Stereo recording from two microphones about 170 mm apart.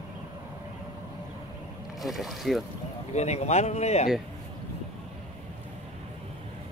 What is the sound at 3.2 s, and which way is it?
Speech, 40° left (ahead or behind).